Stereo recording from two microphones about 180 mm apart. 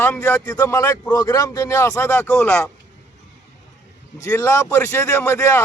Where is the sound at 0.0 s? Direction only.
15° left (ahead or behind).